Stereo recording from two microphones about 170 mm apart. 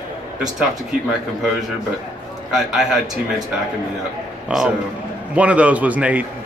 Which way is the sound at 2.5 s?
Centre (ahead or behind).